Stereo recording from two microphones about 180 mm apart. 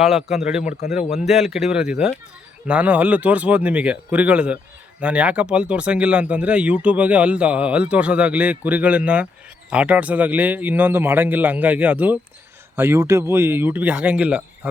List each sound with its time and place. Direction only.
0.0 s speech: centre (ahead or behind)
0.6 s a man's voice: 60° left (ahead or behind)
0.9 s speech: centre (ahead or behind)